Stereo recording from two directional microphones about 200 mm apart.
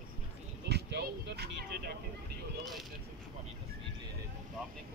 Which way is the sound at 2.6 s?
Centre (ahead or behind).